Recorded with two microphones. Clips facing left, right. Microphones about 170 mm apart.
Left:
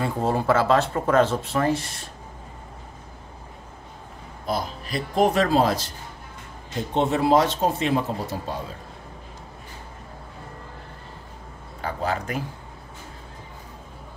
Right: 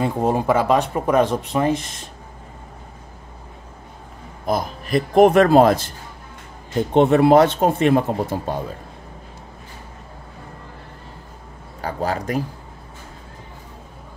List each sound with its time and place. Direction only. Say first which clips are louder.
0.0 s speech: right 4 dB; 15° right (ahead or behind)
4.5 s speech: right 6 dB; 50° right (ahead or behind)
11.8 s speech: right 3 dB; 35° right (ahead or behind)